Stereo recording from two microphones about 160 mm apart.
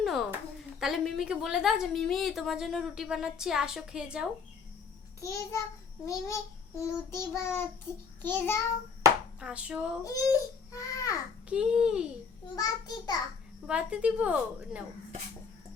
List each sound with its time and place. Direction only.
0.0 s a sound: centre (ahead or behind)
0.8 s a woman's voice: centre (ahead or behind)
5.2 s a child's voice: 20° left (ahead or behind)
6.1 s child singing: 20° left (ahead or behind)
9.4 s a woman's voice: 5° right (ahead or behind)
10.0 s a child's voice: 20° left (ahead or behind)
11.4 s a woman's voice: 5° right (ahead or behind)
12.5 s a child's voice: 25° left (ahead or behind)
13.7 s a woman's voice: 5° right (ahead or behind)